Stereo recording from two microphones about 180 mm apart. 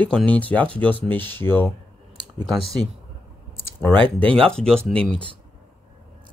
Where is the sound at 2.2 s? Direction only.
20° right (ahead or behind).